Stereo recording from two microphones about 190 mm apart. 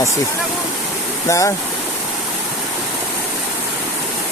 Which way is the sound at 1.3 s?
15° left (ahead or behind).